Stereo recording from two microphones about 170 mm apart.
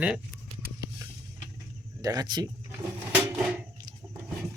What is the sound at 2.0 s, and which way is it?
Speech, 20° right (ahead or behind).